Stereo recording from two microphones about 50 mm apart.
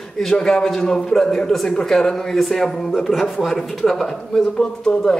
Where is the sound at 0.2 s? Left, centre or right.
Centre.